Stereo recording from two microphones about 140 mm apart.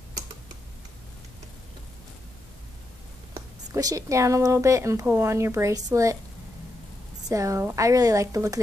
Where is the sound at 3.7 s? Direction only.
25° right (ahead or behind).